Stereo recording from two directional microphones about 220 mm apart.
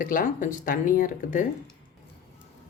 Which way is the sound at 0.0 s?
40° left (ahead or behind).